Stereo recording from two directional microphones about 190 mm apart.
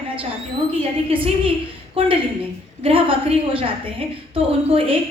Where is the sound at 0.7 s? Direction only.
30° right (ahead or behind).